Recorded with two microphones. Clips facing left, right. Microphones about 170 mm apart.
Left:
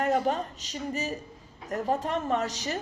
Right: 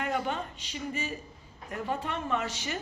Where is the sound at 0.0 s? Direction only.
40° left (ahead or behind).